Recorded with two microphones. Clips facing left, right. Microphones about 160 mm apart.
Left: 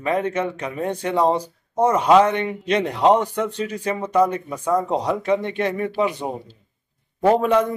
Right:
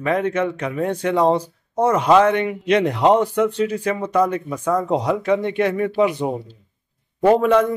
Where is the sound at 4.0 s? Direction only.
10° left (ahead or behind).